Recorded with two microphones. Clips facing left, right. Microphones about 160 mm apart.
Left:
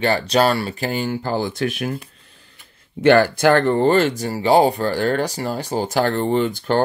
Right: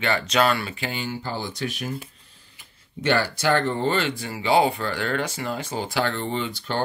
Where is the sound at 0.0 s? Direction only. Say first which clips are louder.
Left 5 dB; 35° left (ahead or behind); by 2.0 s 60° left (ahead or behind).